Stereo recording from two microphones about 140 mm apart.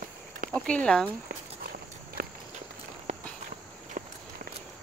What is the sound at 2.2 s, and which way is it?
Walk, 90° right.